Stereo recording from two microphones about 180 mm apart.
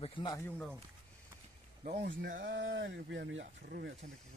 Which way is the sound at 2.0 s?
70° right (ahead or behind).